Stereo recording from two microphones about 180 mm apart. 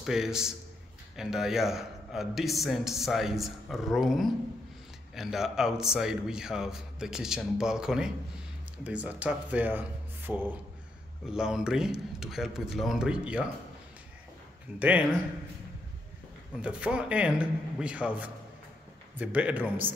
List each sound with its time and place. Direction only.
0.0 s a man's voice: centre (ahead or behind)
14.8 s a man's voice: 10° right (ahead or behind)
16.6 s a man's voice: 5° right (ahead or behind)